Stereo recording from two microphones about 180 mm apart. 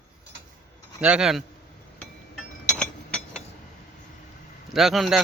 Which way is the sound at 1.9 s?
5° left (ahead or behind).